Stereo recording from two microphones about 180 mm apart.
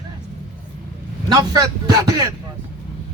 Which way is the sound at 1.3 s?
20° right (ahead or behind).